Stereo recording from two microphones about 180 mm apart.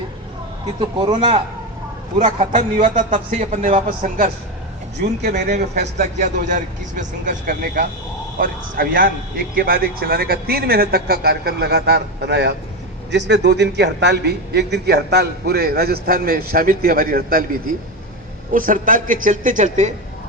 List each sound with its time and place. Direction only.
0.8 s a man's voice: 25° right (ahead or behind)
2.1 s a man's voice: 45° right (ahead or behind)
5.2 s a man's voice: 60° right (ahead or behind)
5.8 s a man's voice: 40° right (ahead or behind)